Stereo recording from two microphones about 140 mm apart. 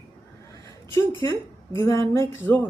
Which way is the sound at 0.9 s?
20° left (ahead or behind).